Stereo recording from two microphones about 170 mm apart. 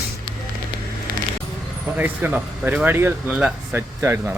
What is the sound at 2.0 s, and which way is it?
Speech, 10° right (ahead or behind).